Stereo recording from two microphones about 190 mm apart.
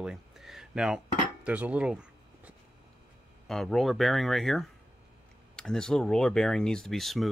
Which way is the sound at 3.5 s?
Centre (ahead or behind).